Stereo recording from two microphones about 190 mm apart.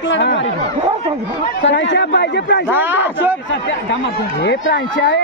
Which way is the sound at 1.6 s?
70° left (ahead or behind).